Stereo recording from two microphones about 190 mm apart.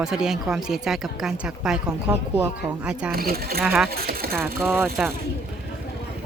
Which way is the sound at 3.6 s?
5° right (ahead or behind).